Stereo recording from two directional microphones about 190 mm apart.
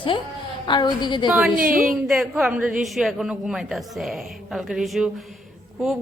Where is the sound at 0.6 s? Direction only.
25° left (ahead or behind).